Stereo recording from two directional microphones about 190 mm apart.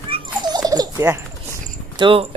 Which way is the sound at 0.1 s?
20° right (ahead or behind).